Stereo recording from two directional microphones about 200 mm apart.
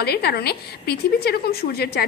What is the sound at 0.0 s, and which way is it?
A woman's voice, 55° left (ahead or behind).